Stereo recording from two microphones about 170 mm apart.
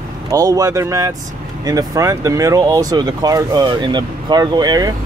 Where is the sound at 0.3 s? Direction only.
20° right (ahead or behind).